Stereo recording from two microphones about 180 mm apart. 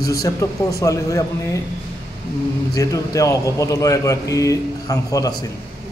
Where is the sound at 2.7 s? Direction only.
20° left (ahead or behind).